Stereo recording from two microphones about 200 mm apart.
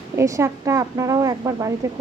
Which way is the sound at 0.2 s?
15° right (ahead or behind).